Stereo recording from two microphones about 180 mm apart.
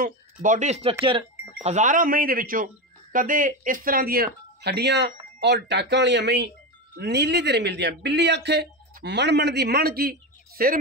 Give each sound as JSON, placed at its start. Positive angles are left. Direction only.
{"t": 0.0, "sound": "a man's voice", "side_deg": -45}